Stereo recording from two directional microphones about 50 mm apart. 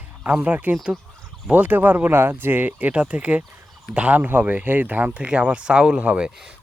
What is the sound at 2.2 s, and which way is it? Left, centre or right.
Speech, right.